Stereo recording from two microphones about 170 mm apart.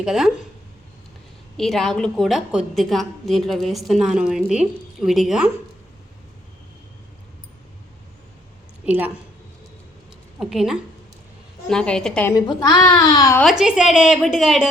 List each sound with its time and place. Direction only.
0.0 s a woman's voice: 5° right (ahead or behind)
1.5 s a woman's voice: centre (ahead or behind)
8.9 s a woman's voice: 10° right (ahead or behind)
10.4 s a woman's voice: centre (ahead or behind)
12.3 s a woman's voice: 25° left (ahead or behind)
13.4 s a woman's voice: centre (ahead or behind)